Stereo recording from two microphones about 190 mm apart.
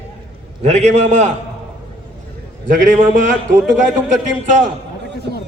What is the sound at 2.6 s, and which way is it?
Speech, 45° right (ahead or behind).